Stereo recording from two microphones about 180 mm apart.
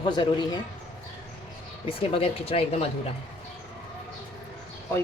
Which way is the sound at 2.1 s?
30° left (ahead or behind).